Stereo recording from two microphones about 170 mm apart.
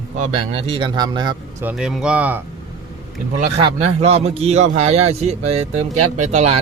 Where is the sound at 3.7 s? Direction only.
40° right (ahead or behind).